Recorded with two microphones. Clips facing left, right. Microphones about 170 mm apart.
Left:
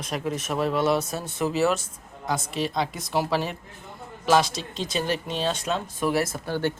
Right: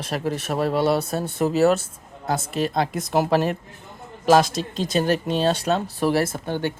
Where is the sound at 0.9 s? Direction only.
60° right (ahead or behind).